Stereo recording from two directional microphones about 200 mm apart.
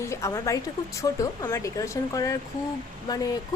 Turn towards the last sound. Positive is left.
turn(degrees=20)  # may be behind; listen again after turning